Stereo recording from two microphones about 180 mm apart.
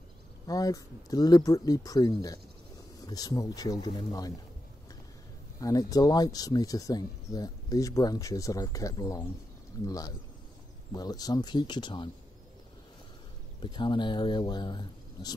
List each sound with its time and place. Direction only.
0.5 s speech: 20° left (ahead or behind)
5.6 s speech: 20° left (ahead or behind)
13.6 s speech: 25° left (ahead or behind)